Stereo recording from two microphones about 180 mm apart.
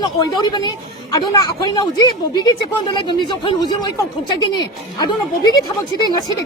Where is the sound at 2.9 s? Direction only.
25° left (ahead or behind).